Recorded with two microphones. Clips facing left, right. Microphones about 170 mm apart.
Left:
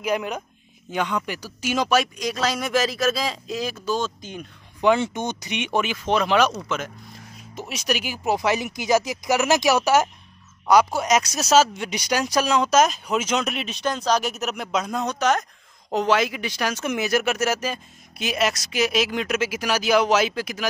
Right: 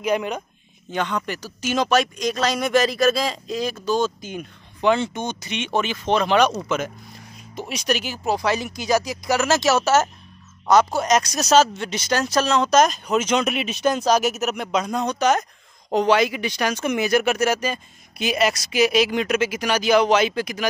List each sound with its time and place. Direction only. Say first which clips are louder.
0.0 s speech: right 2 dB; 5° left (ahead or behind)
4.0 s speech: right 5 dB; 5° right (ahead or behind)
4.8 s speech: even; 15° left (ahead or behind)
7.5 s speech: right 2 dB; 5° left (ahead or behind)